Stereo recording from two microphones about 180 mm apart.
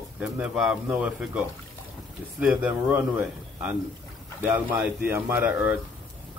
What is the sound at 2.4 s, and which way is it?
Speech, 10° right (ahead or behind).